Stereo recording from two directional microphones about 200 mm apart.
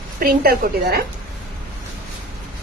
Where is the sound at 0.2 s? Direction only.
50° right (ahead or behind).